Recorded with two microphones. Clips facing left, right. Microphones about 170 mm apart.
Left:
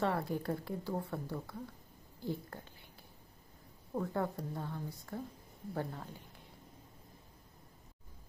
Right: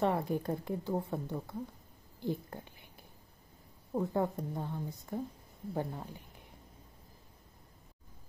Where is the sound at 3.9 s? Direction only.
20° right (ahead or behind).